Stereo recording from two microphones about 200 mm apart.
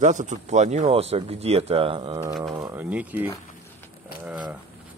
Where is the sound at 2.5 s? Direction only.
10° right (ahead or behind).